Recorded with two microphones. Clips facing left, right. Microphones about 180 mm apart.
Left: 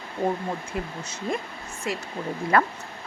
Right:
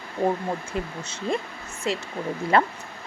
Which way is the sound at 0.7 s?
25° right (ahead or behind).